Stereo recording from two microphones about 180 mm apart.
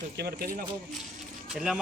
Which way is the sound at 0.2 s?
60° right (ahead or behind).